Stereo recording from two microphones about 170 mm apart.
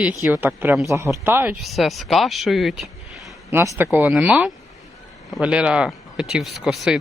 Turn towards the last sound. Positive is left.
turn(degrees=0)  # may be behind; listen again after turning